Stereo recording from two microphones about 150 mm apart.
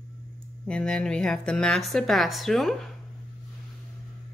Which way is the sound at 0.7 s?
5° left (ahead or behind).